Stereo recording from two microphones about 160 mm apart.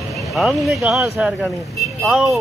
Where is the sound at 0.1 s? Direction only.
Centre (ahead or behind).